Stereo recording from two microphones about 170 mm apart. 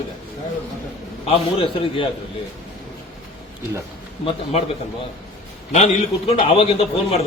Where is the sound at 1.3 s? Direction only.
30° left (ahead or behind).